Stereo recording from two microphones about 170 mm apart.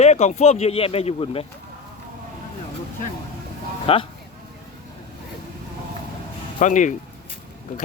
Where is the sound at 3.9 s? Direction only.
35° left (ahead or behind).